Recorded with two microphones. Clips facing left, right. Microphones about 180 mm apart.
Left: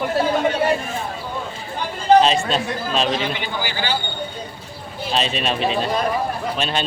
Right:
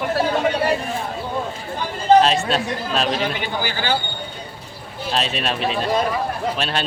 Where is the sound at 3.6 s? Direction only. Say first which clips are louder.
Right 1 dB; 45° right (ahead or behind).